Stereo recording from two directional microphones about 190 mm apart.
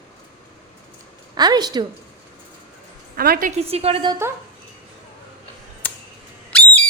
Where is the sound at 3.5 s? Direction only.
30° right (ahead or behind).